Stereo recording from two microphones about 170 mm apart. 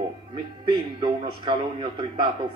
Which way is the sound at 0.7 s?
30° right (ahead or behind).